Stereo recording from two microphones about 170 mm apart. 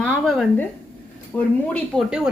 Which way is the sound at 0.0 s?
5° left (ahead or behind).